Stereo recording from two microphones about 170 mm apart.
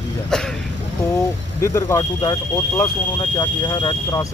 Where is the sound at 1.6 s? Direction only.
15° left (ahead or behind).